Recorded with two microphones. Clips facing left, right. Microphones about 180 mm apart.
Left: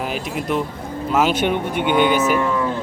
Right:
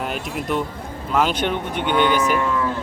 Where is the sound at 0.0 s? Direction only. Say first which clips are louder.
Left 2 dB; centre (ahead or behind).